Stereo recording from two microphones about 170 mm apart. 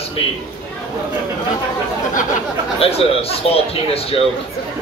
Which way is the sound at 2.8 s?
35° left (ahead or behind).